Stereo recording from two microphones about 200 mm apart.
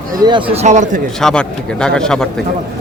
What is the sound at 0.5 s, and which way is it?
Speech, 35° right (ahead or behind).